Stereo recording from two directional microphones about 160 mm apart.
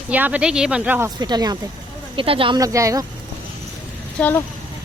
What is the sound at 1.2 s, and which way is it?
Speech, 25° right (ahead or behind).